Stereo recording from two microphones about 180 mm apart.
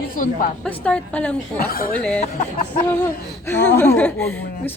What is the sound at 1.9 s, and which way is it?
Speech, 5° left (ahead or behind).